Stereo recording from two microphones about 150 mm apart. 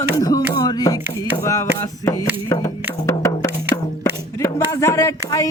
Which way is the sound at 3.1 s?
20° left (ahead or behind).